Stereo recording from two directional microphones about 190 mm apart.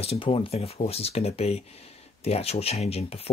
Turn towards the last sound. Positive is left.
turn(degrees=30)  # may be behind; listen again after turning